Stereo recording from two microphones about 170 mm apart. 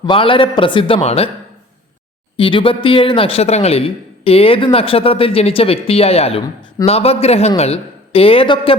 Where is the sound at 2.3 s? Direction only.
30° left (ahead or behind).